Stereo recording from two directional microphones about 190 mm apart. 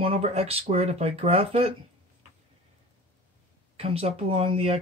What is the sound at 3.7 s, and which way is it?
Speech, 30° right (ahead or behind).